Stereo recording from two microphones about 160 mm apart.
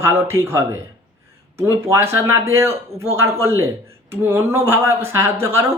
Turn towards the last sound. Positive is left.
turn(degrees=-15)  # may be behind; listen again after turning